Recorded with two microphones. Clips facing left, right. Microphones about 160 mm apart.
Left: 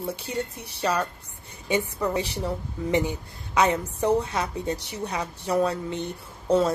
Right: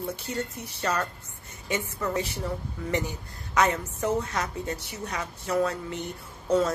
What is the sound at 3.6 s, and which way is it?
A woman's voice, 15° left (ahead or behind).